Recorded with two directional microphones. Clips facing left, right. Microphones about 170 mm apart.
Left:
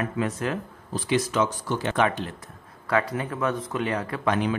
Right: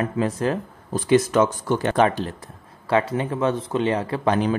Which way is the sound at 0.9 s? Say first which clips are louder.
Right 7 dB; 50° right (ahead or behind).